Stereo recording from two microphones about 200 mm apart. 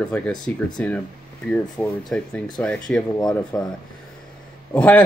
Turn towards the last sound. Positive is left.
turn(degrees=5)  # may be behind; listen again after turning